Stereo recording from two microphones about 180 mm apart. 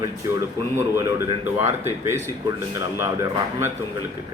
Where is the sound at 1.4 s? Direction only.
15° right (ahead or behind).